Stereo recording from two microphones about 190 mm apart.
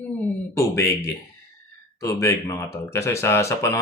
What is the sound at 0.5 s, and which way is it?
Speech, 15° left (ahead or behind).